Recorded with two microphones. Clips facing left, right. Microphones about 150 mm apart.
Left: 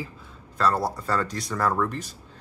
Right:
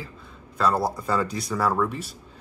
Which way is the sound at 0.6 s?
5° right (ahead or behind).